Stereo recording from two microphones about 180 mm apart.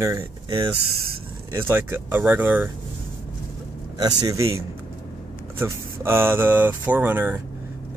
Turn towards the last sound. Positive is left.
turn(degrees=-10)  # may be behind; listen again after turning